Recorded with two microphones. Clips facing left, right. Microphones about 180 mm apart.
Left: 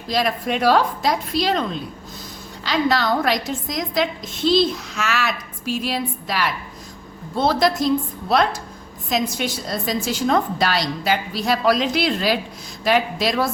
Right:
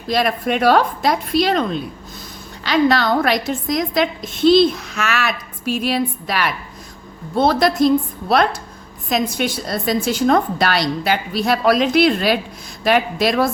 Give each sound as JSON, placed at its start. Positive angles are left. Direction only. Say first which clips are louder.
{"t": 0.1, "sound": "a woman's voice", "louder": "right 3 dB", "side_deg": -60}
{"t": 9.0, "sound": "a woman's voice", "louder": "right 3 dB", "side_deg": -60}